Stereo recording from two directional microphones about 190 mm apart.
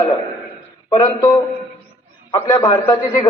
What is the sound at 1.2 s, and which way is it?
A man's voice, 20° left (ahead or behind).